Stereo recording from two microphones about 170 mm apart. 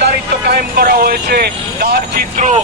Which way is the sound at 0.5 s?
60° right (ahead or behind).